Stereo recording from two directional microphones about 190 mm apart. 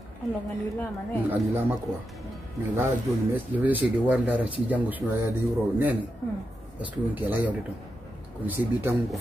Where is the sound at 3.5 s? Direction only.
10° right (ahead or behind).